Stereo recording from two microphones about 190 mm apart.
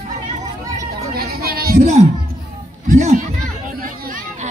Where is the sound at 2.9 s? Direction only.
40° right (ahead or behind).